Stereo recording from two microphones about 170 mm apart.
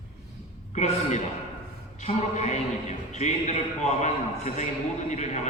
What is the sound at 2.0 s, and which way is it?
A man's voice, 45° left (ahead or behind).